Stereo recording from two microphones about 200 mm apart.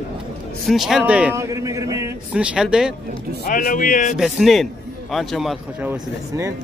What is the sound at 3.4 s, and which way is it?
Speech, 40° left (ahead or behind).